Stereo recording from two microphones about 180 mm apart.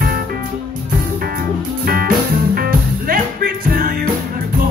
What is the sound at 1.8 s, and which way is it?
Music, 55° right (ahead or behind).